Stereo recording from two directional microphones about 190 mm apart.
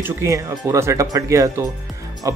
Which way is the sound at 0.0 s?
15° right (ahead or behind).